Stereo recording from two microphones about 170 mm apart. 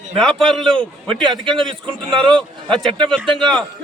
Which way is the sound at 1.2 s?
30° right (ahead or behind).